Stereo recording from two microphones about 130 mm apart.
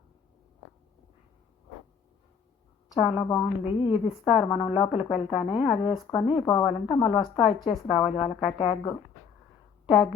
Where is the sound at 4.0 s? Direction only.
40° left (ahead or behind).